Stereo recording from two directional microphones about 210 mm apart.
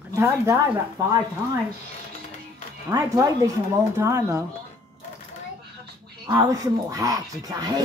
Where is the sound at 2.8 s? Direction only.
15° right (ahead or behind).